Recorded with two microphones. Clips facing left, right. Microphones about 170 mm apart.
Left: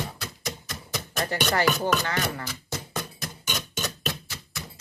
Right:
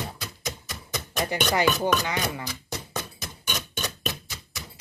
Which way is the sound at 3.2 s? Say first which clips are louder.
Left 1 dB; centre (ahead or behind).